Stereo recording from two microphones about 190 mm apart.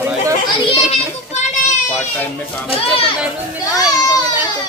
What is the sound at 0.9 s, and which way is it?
Child singing, 40° left (ahead or behind).